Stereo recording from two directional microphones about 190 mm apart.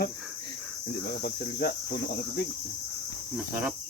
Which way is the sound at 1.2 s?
55° left (ahead or behind).